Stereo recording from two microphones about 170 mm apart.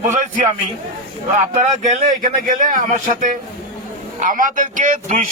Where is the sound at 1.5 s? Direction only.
45° right (ahead or behind).